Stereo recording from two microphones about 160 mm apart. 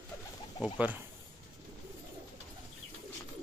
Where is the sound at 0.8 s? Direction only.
10° right (ahead or behind).